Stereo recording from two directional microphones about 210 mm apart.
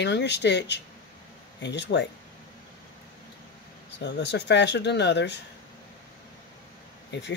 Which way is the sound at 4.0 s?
55° left (ahead or behind).